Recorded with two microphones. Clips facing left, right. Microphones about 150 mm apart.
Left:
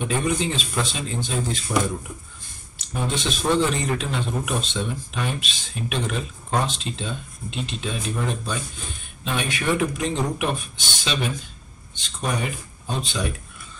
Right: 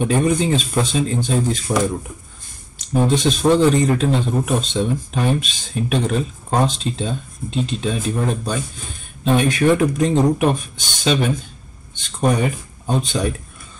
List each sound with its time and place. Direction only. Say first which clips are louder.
0.0 s speech: right 6 dB; 40° right (ahead or behind)
2.9 s a man's voice: right 9 dB; 40° right (ahead or behind)